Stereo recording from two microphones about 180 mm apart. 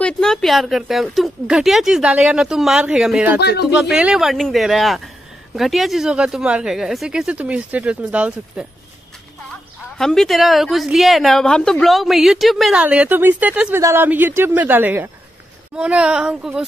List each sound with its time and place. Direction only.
0.0 s a woman's voice: 5° left (ahead or behind)
3.3 s speech: 65° left (ahead or behind)
3.9 s a woman's voice: 5° right (ahead or behind)
9.9 s a woman's voice: centre (ahead or behind)